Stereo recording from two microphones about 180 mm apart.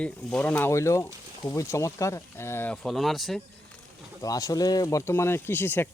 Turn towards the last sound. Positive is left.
turn(degrees=10)  # may be behind; listen again after turning